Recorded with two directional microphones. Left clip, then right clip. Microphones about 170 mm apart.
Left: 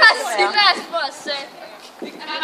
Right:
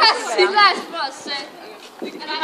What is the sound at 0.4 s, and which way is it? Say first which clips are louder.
Chatter: right 1 dB; 40° left (ahead or behind).